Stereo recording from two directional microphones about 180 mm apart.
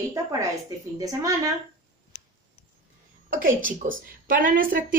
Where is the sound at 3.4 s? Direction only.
50° right (ahead or behind).